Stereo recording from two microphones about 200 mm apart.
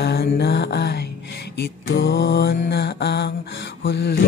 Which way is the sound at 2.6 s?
55° left (ahead or behind).